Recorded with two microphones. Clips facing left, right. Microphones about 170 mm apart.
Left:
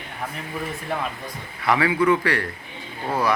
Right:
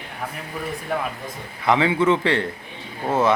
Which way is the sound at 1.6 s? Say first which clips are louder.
Right 1 dB; 20° right (ahead or behind).